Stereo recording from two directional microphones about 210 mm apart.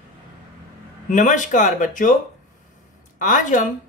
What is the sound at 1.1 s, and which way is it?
Speech, 35° left (ahead or behind).